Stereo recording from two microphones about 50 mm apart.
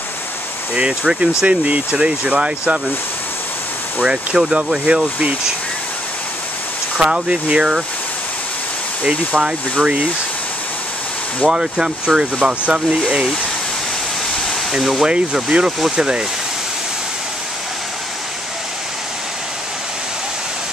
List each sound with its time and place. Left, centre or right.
0.7 s speech: right
4.0 s speech: centre
7.0 s speech: centre
9.0 s speech: centre
11.4 s speech: centre
14.7 s speech: centre
15.0 s speech: centre